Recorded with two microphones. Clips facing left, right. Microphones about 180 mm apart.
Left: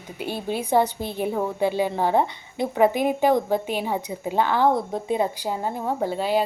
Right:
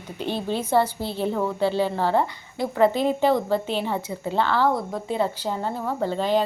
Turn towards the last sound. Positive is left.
turn(degrees=10)  # may be behind; listen again after turning